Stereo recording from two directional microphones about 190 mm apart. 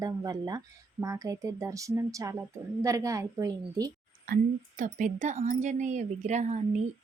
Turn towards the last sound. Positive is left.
turn(degrees=-40)  # may be behind; listen again after turning